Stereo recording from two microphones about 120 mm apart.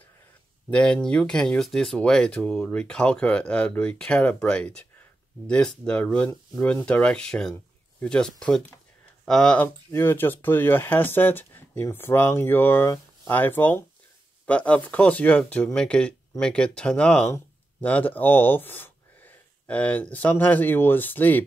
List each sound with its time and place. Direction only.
0.7 s speech: 10° left (ahead or behind)
9.8 s speech: 20° left (ahead or behind)